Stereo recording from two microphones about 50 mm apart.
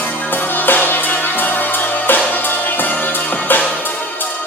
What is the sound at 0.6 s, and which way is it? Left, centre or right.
Music, left.